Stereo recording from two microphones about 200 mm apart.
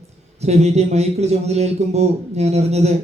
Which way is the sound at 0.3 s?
35° right (ahead or behind).